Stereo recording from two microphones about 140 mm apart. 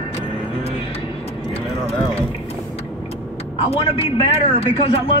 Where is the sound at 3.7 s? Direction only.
45° left (ahead or behind).